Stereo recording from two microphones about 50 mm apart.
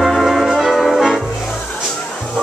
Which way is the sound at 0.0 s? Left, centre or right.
Centre.